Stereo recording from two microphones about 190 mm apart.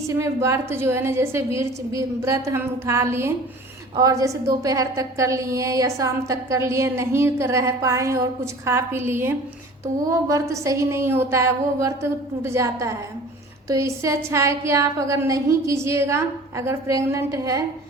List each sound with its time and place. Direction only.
0.1 s a woman's voice: 15° right (ahead or behind)